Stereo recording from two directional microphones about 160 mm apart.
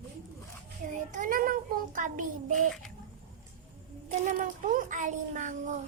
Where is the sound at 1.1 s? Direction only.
60° right (ahead or behind).